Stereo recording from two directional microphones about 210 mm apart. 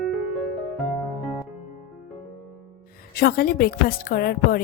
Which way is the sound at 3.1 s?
45° left (ahead or behind).